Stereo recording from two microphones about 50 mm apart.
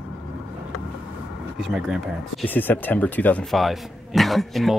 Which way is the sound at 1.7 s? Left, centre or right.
Centre.